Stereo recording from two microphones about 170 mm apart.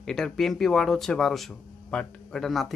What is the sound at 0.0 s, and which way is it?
Speech, 5° left (ahead or behind).